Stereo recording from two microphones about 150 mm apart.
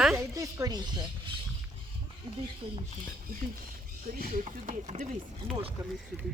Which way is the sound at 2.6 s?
35° right (ahead or behind).